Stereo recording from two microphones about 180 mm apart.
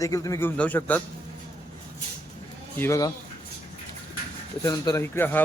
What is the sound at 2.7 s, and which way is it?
Speech, 15° left (ahead or behind).